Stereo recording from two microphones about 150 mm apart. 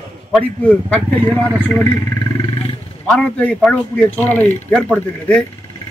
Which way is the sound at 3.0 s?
5° left (ahead or behind).